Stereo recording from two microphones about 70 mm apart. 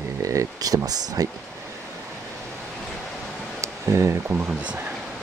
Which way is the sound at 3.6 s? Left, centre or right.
Right.